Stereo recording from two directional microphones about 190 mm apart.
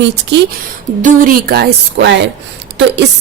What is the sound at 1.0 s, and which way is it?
A woman's voice, 45° right (ahead or behind).